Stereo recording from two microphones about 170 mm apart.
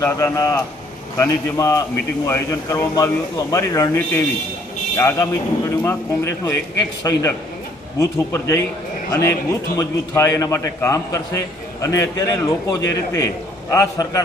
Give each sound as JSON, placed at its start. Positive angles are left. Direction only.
{"t": 0.0, "sound": "a man's voice", "side_deg": 15}